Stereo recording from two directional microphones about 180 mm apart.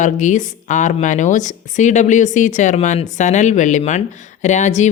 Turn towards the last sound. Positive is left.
turn(degrees=40)  # may be behind; listen again after turning